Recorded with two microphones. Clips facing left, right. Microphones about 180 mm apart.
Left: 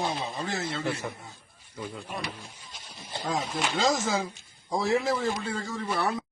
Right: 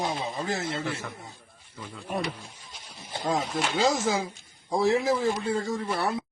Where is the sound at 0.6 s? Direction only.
20° right (ahead or behind).